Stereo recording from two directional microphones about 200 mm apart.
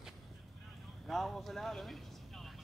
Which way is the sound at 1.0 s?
Centre (ahead or behind).